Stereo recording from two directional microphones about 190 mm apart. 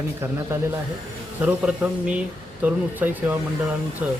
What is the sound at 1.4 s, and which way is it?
Speech, 5° right (ahead or behind).